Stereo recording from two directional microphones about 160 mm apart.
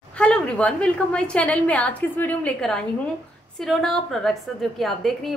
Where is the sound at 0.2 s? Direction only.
10° left (ahead or behind).